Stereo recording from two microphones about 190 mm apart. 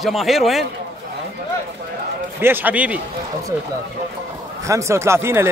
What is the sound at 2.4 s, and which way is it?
Speech, 10° right (ahead or behind).